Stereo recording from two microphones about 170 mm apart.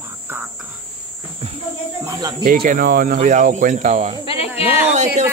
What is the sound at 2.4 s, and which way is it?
Speech, 55° right (ahead or behind).